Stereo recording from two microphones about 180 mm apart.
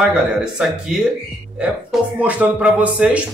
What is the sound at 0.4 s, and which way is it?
Speech, 5° right (ahead or behind).